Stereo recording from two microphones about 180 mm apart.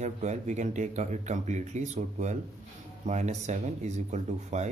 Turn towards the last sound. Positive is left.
turn(degrees=-40)  # may be behind; listen again after turning